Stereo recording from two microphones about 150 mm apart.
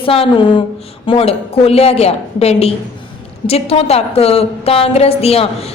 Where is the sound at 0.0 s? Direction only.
40° left (ahead or behind).